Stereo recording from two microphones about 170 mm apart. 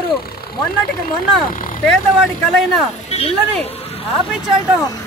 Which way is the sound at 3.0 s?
35° left (ahead or behind).